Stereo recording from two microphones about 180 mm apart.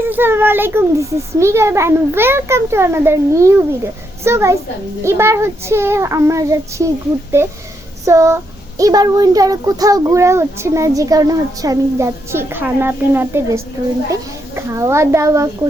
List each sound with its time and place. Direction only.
0.0 s a child's voice: 10° right (ahead or behind)